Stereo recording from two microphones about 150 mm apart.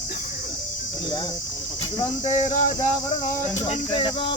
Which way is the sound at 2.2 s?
50° left (ahead or behind).